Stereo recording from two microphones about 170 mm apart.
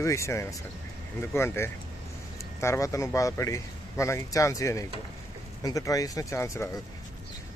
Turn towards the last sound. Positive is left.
turn(degrees=15)  # may be behind; listen again after turning